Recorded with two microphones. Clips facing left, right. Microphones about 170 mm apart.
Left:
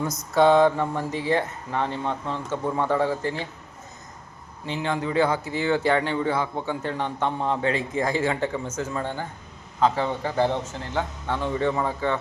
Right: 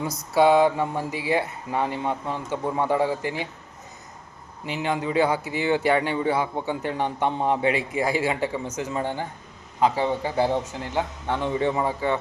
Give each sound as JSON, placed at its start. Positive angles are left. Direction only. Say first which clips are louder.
{"t": 0.3, "sound": "a man's voice", "louder": "even", "side_deg": -10}
{"t": 4.6, "sound": "a man's voice", "louder": "right 1 dB", "side_deg": -15}